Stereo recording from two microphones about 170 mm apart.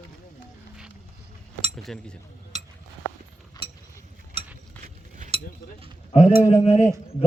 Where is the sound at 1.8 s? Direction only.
5° left (ahead or behind).